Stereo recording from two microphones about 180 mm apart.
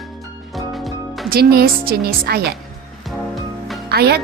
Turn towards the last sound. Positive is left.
turn(degrees=-65)  # may be behind; listen again after turning